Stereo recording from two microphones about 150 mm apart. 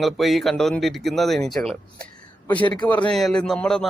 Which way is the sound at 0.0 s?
Centre (ahead or behind).